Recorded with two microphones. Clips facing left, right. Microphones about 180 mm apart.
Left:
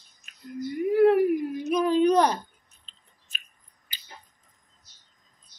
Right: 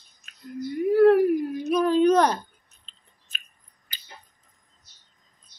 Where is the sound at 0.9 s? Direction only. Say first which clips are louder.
Right 2 dB; 20° left (ahead or behind).